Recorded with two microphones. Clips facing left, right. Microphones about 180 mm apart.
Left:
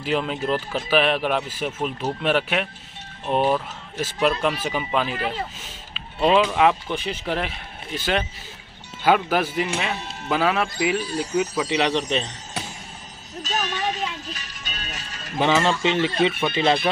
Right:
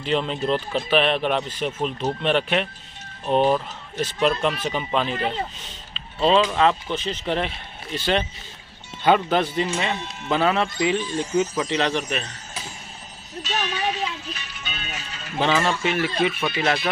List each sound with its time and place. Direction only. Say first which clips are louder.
0.0 s speech: right 1 dB; 5° left (ahead or behind); by 12.3 s 20° left (ahead or behind)
13.4 s music: even; 45° left (ahead or behind)
15.3 s speech: left 2 dB; 15° left (ahead or behind)